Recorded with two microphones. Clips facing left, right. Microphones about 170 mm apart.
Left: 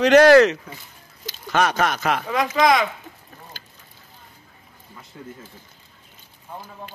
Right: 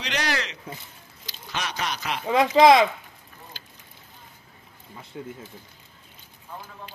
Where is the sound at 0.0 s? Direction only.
50° left (ahead or behind).